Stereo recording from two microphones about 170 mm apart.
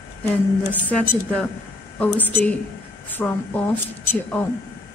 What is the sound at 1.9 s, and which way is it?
A woman's voice, 10° left (ahead or behind).